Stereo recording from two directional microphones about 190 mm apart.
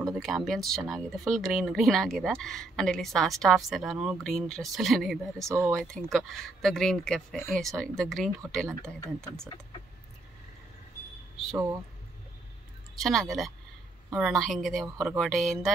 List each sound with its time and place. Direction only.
0.5 s speech: centre (ahead or behind)
5.4 s speech: 15° right (ahead or behind)
5.8 s speech: 5° left (ahead or behind)
7.6 s speech: centre (ahead or behind)
11.5 s speech: 15° right (ahead or behind)
12.9 s speech: centre (ahead or behind)